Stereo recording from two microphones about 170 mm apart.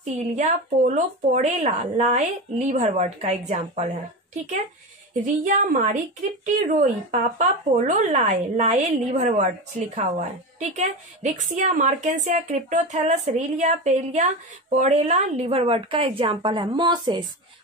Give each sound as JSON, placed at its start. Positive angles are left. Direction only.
{"t": 0.0, "sound": "a woman's voice", "side_deg": -40}
{"t": 5.2, "sound": "a woman's voice", "side_deg": -50}